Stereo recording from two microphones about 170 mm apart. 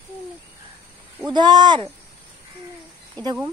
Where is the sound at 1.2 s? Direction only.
25° right (ahead or behind).